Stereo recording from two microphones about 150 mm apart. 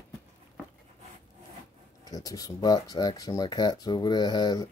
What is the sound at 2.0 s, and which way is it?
Speech, 25° left (ahead or behind).